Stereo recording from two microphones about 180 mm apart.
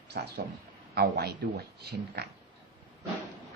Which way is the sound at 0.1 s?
60° right (ahead or behind).